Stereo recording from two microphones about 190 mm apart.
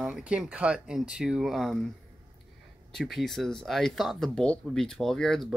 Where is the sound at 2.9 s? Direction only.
Centre (ahead or behind).